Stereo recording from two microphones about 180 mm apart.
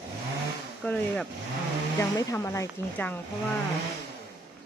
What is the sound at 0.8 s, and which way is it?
Speech, 5° left (ahead or behind).